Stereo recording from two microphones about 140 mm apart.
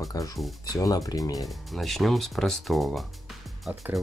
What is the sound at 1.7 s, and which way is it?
Speech, centre (ahead or behind).